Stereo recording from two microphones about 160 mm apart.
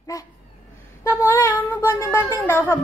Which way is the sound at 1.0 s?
15° left (ahead or behind).